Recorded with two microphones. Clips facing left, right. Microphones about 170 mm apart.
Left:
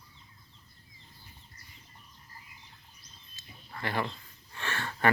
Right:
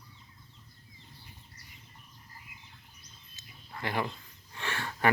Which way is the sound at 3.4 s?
15° right (ahead or behind).